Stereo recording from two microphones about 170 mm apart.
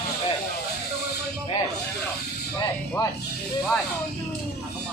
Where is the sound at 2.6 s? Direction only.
20° left (ahead or behind).